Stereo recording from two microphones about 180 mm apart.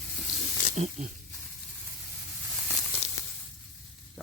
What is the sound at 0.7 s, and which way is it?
Speech, 40° right (ahead or behind).